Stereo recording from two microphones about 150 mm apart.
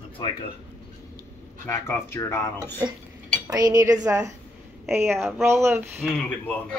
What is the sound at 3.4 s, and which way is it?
Speech, 25° right (ahead or behind).